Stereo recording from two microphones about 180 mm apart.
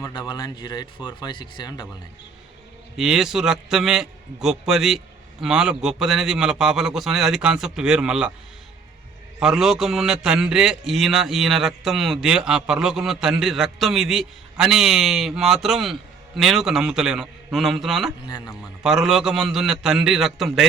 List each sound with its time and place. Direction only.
0.0 s speech: 25° left (ahead or behind)
3.0 s a man's voice: centre (ahead or behind)
9.4 s a man's voice: centre (ahead or behind)
18.3 s speech: 25° left (ahead or behind)
18.8 s a man's voice: centre (ahead or behind)